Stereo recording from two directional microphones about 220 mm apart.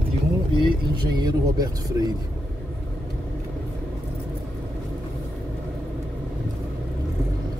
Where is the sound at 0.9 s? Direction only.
20° right (ahead or behind).